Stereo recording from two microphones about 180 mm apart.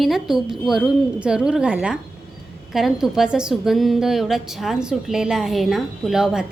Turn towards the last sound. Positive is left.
turn(degrees=-5)  # may be behind; listen again after turning